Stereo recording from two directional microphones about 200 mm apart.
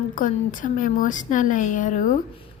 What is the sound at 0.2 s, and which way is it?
A woman's voice, 40° left (ahead or behind).